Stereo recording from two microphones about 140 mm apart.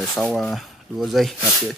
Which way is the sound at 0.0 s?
5° left (ahead or behind).